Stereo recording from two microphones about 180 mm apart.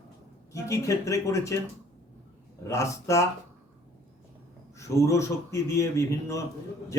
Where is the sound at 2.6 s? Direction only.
15° left (ahead or behind).